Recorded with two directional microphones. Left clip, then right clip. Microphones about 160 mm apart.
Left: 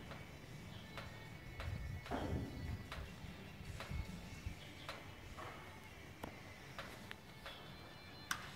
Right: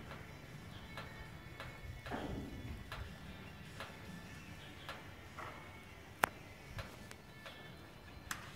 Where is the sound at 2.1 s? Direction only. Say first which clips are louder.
Even; 60° left (ahead or behind).